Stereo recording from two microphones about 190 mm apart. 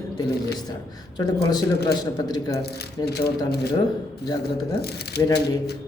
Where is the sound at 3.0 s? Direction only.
60° left (ahead or behind).